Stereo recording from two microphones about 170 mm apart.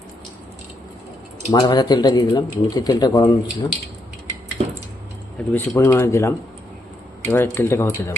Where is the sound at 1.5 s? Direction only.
25° left (ahead or behind).